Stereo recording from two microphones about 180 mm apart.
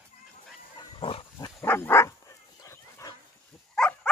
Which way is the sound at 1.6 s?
15° left (ahead or behind).